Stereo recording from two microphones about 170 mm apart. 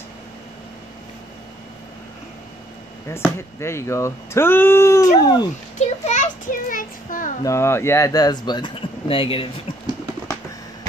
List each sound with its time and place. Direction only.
3.1 s speech: 15° left (ahead or behind)
5.8 s a child's voice: 45° left (ahead or behind)
7.4 s speech: 15° left (ahead or behind); by 9.5 s 30° left (ahead or behind)